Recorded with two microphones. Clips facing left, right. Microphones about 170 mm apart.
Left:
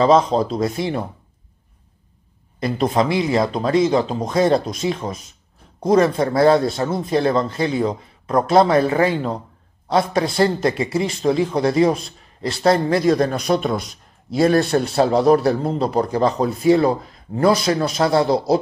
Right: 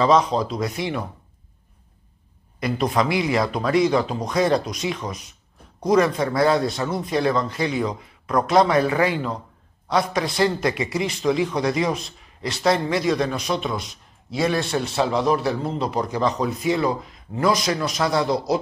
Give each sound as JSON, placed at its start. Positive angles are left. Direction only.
{"t": 0.0, "sound": "speech", "side_deg": 30}
{"t": 2.8, "sound": "a man's voice", "side_deg": 25}